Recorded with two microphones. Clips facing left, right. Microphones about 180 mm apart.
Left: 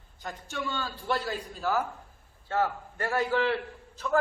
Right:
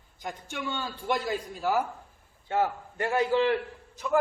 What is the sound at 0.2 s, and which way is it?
A man's voice, 15° right (ahead or behind).